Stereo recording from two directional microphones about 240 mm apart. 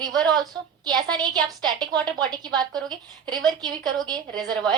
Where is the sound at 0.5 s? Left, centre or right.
Centre.